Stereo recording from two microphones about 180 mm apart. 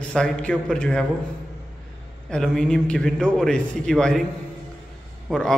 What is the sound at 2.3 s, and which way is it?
A man's voice, centre (ahead or behind).